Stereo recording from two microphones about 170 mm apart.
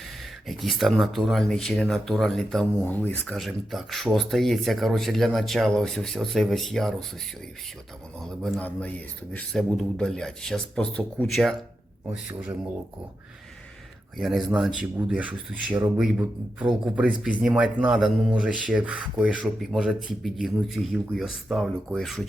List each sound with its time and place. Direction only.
0.4 s speech: centre (ahead or behind)
3.3 s speech: centre (ahead or behind)
8.2 s speech: centre (ahead or behind)
14.2 s speech: centre (ahead or behind)